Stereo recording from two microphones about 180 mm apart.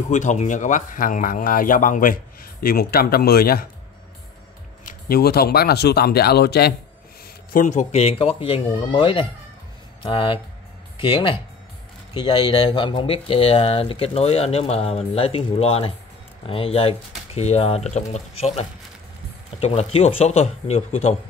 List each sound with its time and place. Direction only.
0.1 s speech: 40° left (ahead or behind); by 3.6 s 55° left (ahead or behind)
4.8 s speech: 55° left (ahead or behind)
7.5 s speech: 40° left (ahead or behind)